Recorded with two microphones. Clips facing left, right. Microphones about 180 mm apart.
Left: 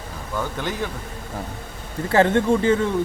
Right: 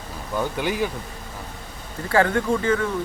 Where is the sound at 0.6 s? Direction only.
10° right (ahead or behind).